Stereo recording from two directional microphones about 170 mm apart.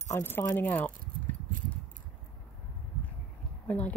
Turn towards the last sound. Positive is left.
turn(degrees=10)  # may be behind; listen again after turning